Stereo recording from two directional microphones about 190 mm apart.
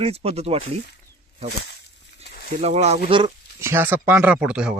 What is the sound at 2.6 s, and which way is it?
Speech, 35° right (ahead or behind).